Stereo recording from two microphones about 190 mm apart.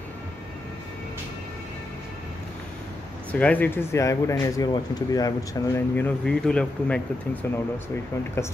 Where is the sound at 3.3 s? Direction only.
5° left (ahead or behind).